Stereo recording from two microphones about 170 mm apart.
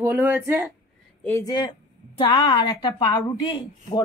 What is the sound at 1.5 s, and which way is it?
A woman's voice, 25° left (ahead or behind).